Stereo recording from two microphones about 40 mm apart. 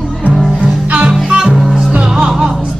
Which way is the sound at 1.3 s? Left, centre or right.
Centre.